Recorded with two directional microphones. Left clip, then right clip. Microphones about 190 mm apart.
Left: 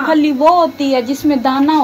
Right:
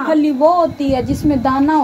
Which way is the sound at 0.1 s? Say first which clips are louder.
Left 2 dB; 15° right (ahead or behind).